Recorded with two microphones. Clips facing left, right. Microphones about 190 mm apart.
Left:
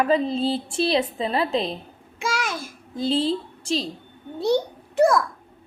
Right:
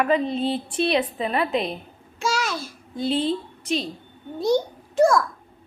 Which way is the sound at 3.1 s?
30° left (ahead or behind).